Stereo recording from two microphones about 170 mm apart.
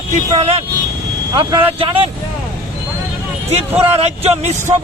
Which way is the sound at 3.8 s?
35° right (ahead or behind).